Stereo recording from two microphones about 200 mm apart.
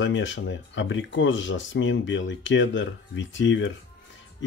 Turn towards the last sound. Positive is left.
turn(degrees=65)  # may be behind; listen again after turning